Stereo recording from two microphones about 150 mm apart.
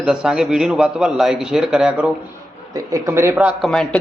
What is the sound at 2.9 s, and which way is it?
Speech, 20° right (ahead or behind).